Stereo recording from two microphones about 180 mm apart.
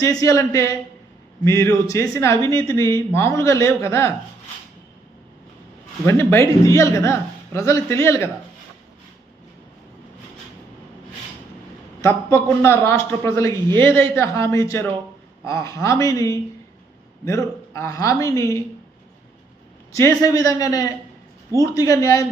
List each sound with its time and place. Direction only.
0.0 s a man's voice: 20° left (ahead or behind)
6.1 s speech: 15° left (ahead or behind)
12.6 s speech: 15° left (ahead or behind)
17.7 s speech: 15° left (ahead or behind)
19.9 s a man's voice: 15° left (ahead or behind)